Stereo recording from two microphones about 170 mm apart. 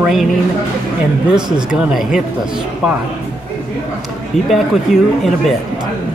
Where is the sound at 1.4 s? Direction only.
25° right (ahead or behind).